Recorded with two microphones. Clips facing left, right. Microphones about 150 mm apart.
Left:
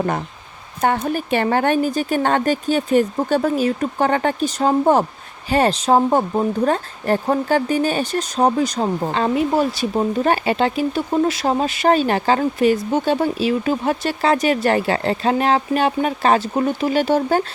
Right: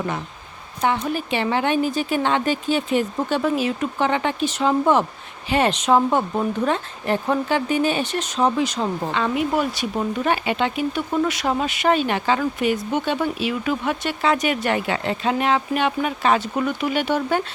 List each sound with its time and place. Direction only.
0.8 s speech: 50° left (ahead or behind)